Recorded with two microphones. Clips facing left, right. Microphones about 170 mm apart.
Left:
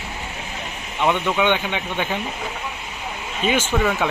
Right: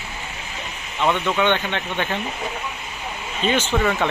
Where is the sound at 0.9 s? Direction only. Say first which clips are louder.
Even; 15° left (ahead or behind).